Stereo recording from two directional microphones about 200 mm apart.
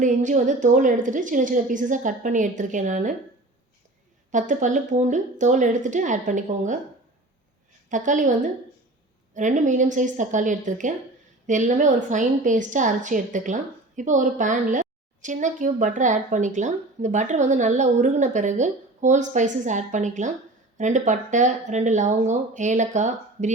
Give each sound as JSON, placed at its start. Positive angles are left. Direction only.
{"t": 0.0, "sound": "a woman's voice", "side_deg": -40}
{"t": 4.3, "sound": "a woman's voice", "side_deg": -40}
{"t": 7.9, "sound": "a woman's voice", "side_deg": -40}